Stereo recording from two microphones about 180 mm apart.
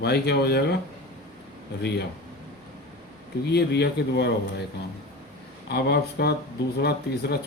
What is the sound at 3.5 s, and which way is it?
Speech, 70° left (ahead or behind).